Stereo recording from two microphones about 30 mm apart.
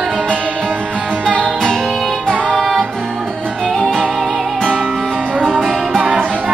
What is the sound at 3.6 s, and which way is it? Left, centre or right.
Music, left.